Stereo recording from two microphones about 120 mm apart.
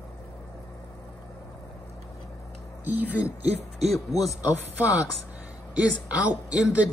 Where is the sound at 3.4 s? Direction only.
60° right (ahead or behind).